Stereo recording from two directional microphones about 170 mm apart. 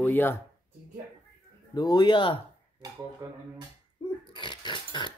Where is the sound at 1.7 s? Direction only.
25° left (ahead or behind).